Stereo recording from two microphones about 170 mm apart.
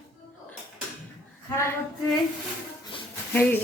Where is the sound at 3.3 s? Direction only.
10° left (ahead or behind).